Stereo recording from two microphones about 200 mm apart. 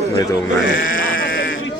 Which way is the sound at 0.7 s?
45° left (ahead or behind).